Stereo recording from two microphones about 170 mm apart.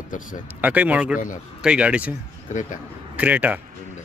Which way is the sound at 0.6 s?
10° right (ahead or behind).